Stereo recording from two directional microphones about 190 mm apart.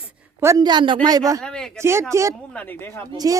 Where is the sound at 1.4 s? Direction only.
5° left (ahead or behind).